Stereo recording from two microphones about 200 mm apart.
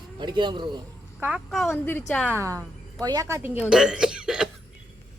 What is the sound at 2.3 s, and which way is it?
Speech, 15° right (ahead or behind).